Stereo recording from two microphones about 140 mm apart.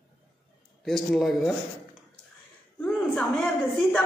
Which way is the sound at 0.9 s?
Centre (ahead or behind).